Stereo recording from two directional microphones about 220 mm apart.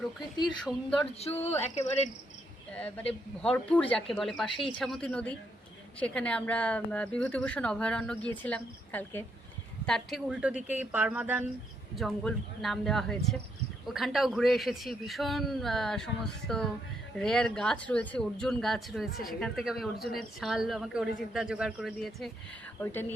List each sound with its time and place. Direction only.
0.4 s speech: centre (ahead or behind)
1.2 s speech: 30° left (ahead or behind)
2.7 s speech: 5° left (ahead or behind)
22.8 s speech: 10° left (ahead or behind)